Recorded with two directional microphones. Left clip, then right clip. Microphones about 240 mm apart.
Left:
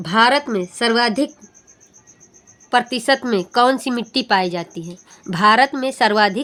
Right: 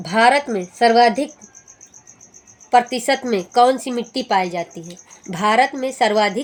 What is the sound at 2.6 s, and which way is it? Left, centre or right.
Speech, left.